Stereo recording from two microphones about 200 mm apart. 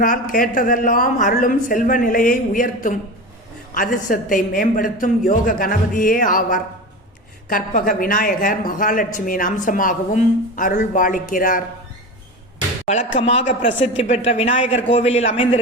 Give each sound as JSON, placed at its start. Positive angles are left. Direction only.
{"t": 0.0, "sound": "a woman's voice", "side_deg": 45}
{"t": 13.1, "sound": "a man's voice", "side_deg": 30}